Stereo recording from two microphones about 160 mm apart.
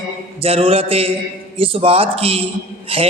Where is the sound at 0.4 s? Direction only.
35° right (ahead or behind).